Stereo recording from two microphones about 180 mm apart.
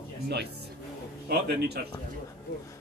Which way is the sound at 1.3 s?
65° right (ahead or behind).